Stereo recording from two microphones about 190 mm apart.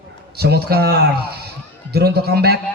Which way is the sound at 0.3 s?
55° right (ahead or behind).